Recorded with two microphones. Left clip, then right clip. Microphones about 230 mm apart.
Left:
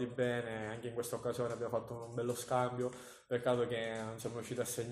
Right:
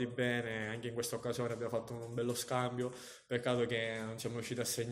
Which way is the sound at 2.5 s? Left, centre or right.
Right.